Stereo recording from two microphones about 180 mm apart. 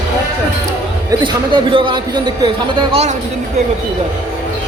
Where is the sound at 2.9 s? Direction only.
35° right (ahead or behind).